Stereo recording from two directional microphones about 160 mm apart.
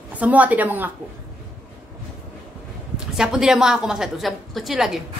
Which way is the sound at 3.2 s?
5° right (ahead or behind).